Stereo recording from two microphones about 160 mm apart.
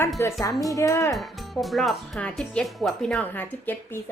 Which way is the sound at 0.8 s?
20° left (ahead or behind).